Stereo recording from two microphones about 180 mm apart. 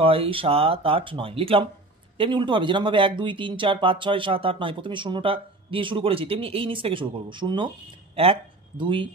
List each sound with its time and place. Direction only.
0.0 s speech: 30° right (ahead or behind)